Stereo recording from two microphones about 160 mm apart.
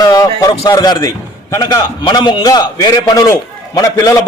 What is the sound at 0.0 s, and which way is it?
A man's voice, 20° left (ahead or behind).